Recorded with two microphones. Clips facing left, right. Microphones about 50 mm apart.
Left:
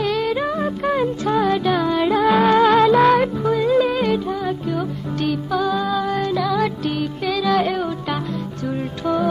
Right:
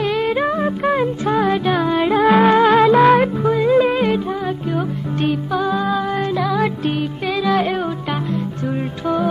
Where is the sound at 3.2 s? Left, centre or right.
Centre.